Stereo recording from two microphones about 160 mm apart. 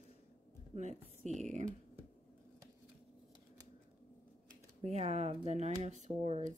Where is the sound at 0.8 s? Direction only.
45° right (ahead or behind).